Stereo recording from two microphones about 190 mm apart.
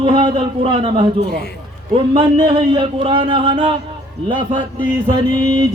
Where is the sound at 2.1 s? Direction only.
25° right (ahead or behind).